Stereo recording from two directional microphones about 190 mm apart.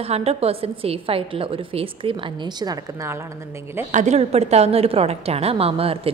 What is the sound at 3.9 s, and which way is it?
A woman's voice, 40° right (ahead or behind).